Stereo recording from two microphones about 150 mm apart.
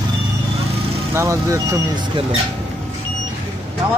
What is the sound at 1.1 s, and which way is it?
Speech, 20° right (ahead or behind).